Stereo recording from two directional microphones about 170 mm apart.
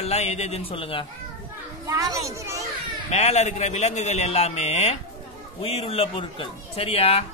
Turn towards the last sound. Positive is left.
turn(degrees=35)  # may be behind; listen again after turning